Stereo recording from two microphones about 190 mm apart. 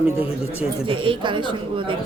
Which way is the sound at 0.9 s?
25° right (ahead or behind).